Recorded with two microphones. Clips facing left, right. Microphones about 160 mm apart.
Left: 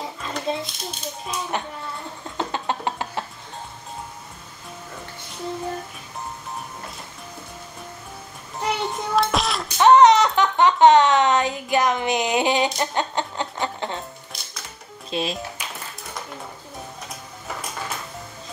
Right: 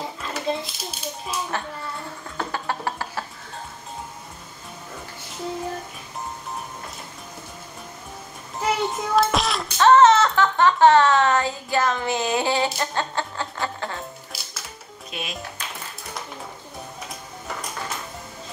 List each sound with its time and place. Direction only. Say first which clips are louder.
0.0 s a child's voice: even; centre (ahead or behind)
2.3 s a sound: left 2 dB; 20° left (ahead or behind)
8.5 s a sound: right 2 dB; centre (ahead or behind)
9.8 s speech: left 1 dB; 15° left (ahead or behind)
14.3 s music: right 1 dB; 5° right (ahead or behind)
15.0 s speech: left 8 dB; 30° left (ahead or behind)
15.6 s music: even; 10° left (ahead or behind)